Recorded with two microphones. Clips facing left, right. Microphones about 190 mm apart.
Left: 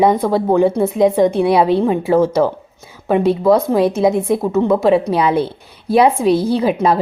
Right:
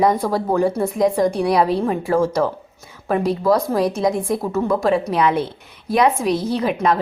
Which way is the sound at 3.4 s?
Centre (ahead or behind).